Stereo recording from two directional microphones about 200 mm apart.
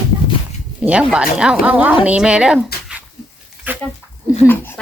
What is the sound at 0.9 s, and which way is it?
Speech, 5° right (ahead or behind).